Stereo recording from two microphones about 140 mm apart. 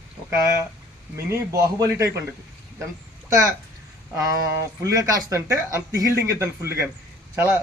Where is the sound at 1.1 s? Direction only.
20° right (ahead or behind).